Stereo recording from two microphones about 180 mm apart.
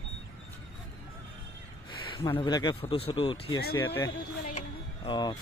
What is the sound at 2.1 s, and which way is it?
Speech, 25° left (ahead or behind).